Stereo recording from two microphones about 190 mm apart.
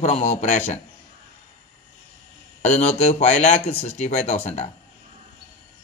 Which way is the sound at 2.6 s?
35° left (ahead or behind).